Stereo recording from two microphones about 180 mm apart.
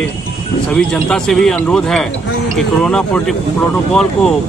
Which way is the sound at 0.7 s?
5° left (ahead or behind).